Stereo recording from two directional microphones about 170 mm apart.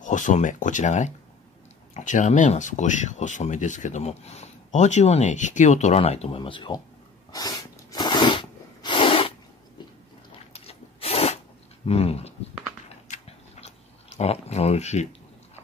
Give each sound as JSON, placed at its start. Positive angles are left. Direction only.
{"t": 0.0, "sound": "speech", "side_deg": 45}
{"t": 7.3, "sound": "sneeze", "side_deg": 20}
{"t": 10.5, "sound": "rub", "side_deg": 35}
{"t": 11.8, "sound": "speech", "side_deg": 35}
{"t": 13.1, "sound": "a sound", "side_deg": 45}
{"t": 14.1, "sound": "speech", "side_deg": 40}